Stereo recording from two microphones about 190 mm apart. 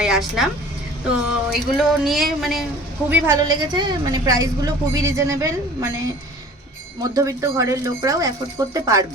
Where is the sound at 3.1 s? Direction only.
20° right (ahead or behind).